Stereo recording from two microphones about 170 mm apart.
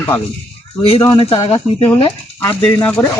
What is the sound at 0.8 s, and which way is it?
Speech, 35° left (ahead or behind).